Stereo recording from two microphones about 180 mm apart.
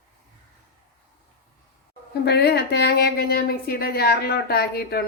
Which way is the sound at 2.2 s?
65° left (ahead or behind).